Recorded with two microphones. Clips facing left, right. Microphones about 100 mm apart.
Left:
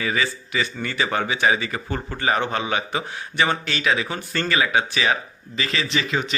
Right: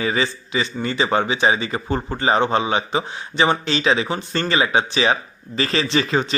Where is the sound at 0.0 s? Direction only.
30° right (ahead or behind).